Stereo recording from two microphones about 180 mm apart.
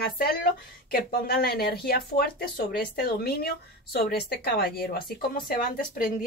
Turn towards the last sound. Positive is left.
turn(degrees=50)  # may be behind; listen again after turning